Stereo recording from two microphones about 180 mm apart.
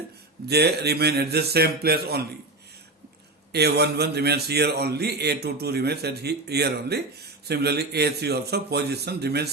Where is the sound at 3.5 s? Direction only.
65° right (ahead or behind).